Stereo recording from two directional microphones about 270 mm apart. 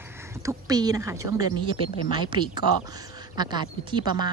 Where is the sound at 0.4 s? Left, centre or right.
Centre.